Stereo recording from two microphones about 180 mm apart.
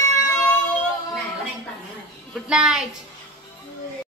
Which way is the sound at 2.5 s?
5° right (ahead or behind).